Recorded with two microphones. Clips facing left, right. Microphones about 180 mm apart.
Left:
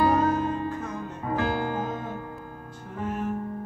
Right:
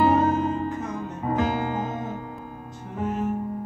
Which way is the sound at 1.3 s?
20° right (ahead or behind).